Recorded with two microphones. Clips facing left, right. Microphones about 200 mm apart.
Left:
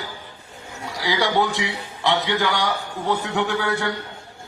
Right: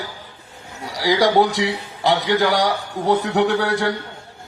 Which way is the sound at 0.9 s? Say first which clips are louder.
Right 6 dB; 35° right (ahead or behind).